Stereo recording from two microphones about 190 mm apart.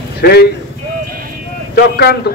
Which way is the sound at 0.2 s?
55° left (ahead or behind).